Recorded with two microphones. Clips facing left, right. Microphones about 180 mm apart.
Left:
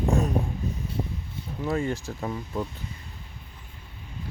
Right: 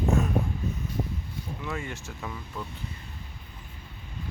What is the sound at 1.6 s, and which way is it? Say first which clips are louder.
Speech: left 10 dB; 35° left (ahead or behind).